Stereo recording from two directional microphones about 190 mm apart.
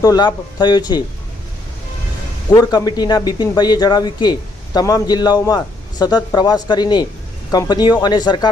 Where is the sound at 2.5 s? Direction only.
20° left (ahead or behind).